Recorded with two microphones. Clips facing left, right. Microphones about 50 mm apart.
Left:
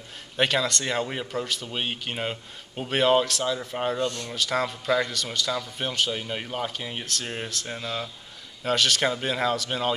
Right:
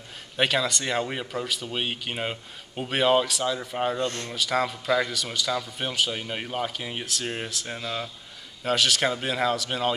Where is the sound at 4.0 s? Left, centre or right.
Right.